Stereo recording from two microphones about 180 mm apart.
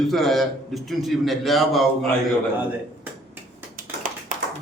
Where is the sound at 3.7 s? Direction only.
45° right (ahead or behind).